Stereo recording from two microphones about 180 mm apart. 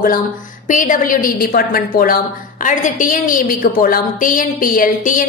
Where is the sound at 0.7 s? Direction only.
45° left (ahead or behind).